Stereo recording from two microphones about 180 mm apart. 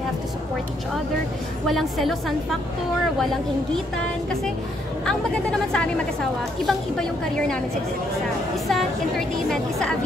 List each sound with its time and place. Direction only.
1.7 s a woman's voice: centre (ahead or behind)
5.0 s a woman's voice: 5° left (ahead or behind)
9.5 s a woman's voice: 5° left (ahead or behind)